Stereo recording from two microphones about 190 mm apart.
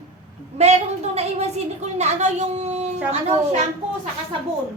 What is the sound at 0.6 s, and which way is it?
A woman's voice, 35° right (ahead or behind).